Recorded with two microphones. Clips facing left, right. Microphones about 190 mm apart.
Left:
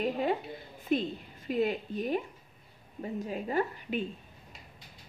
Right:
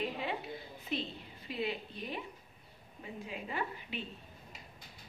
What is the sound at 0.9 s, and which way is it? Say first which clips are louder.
A woman's voice: left 9 dB; 50° left (ahead or behind).